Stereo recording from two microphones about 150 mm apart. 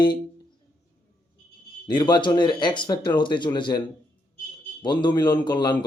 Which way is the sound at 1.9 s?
30° left (ahead or behind).